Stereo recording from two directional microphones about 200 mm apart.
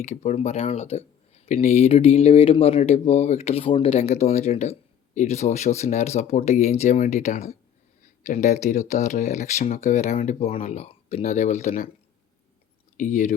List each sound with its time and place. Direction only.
0.0 s speech: 35° left (ahead or behind)
13.0 s speech: 40° left (ahead or behind)